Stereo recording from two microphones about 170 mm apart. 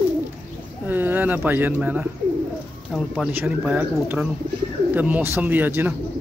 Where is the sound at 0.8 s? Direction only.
10° right (ahead or behind).